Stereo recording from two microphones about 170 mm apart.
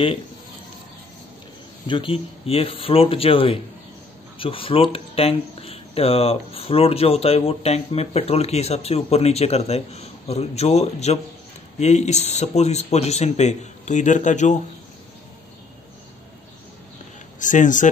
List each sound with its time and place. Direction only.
1.9 s speech: 30° left (ahead or behind)
17.4 s speech: 50° left (ahead or behind)